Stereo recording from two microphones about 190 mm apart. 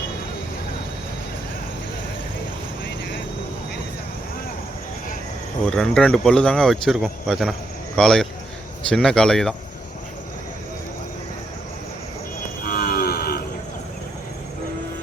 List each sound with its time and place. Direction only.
5.6 s speech: 5° left (ahead or behind)
12.6 s livestock: 55° left (ahead or behind)